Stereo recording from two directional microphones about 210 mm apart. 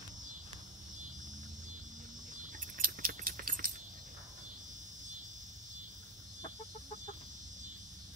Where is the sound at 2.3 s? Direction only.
35° right (ahead or behind).